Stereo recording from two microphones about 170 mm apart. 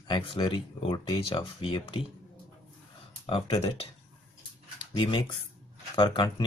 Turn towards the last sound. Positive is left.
turn(degrees=30)  # may be behind; listen again after turning